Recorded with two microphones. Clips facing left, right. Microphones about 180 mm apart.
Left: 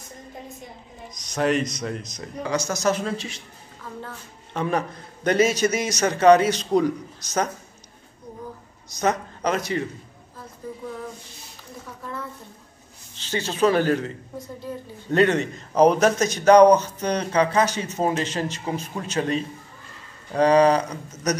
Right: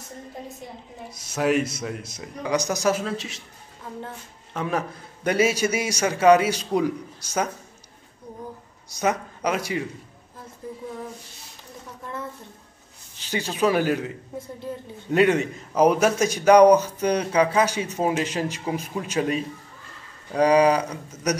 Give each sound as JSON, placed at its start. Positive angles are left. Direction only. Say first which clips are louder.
{"t": 1.1, "sound": "a man's voice", "louder": "even", "side_deg": -5}
{"t": 4.6, "sound": "a man's voice", "louder": "left 2 dB", "side_deg": -5}
{"t": 9.0, "sound": "a man's voice", "louder": "left 1 dB", "side_deg": -10}
{"t": 13.2, "sound": "a man's voice", "louder": "left 2 dB", "side_deg": -10}